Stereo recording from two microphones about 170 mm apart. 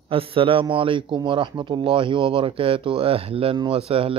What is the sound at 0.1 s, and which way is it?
A man's voice, 35° right (ahead or behind).